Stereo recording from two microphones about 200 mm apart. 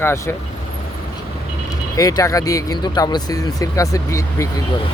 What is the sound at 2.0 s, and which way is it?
Speech, 20° left (ahead or behind).